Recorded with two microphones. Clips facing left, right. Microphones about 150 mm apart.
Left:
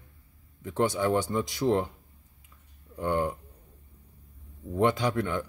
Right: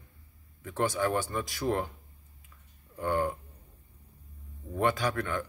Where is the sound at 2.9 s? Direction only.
20° left (ahead or behind).